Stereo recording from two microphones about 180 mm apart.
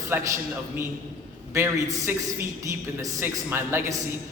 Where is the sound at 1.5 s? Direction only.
15° right (ahead or behind).